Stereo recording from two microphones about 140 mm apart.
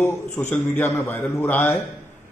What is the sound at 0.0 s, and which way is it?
A man's voice, 15° left (ahead or behind).